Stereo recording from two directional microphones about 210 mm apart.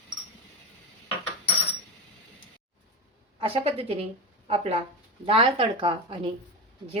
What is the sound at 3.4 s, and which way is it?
Speech, 25° right (ahead or behind).